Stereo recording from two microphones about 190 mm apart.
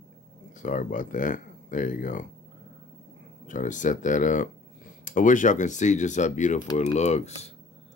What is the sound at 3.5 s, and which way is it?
Speech, 40° left (ahead or behind).